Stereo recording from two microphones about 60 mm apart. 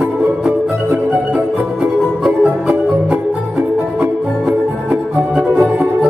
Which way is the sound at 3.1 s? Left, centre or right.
Right.